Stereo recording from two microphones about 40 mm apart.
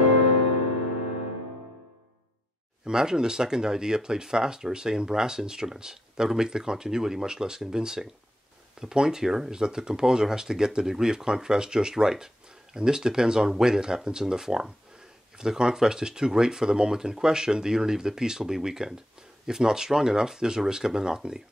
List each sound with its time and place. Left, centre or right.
2.8 s speech: centre